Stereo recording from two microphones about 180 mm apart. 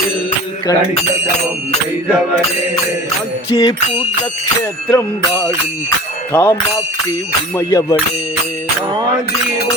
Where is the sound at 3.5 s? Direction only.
25° left (ahead or behind).